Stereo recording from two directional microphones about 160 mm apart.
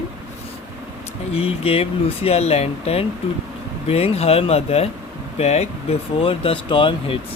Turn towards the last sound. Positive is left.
turn(degrees=30)  # may be behind; listen again after turning